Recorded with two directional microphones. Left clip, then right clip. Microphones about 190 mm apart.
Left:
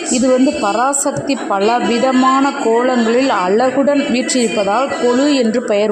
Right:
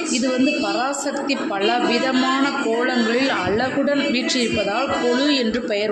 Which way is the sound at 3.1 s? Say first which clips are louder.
Left 7 dB; 35° left (ahead or behind).